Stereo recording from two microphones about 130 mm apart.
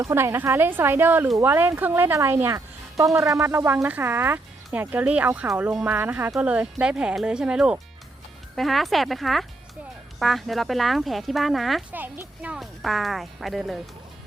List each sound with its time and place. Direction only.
0.0 s speech: 20° right (ahead or behind); by 11.8 s centre (ahead or behind)
11.9 s speech: 15° right (ahead or behind)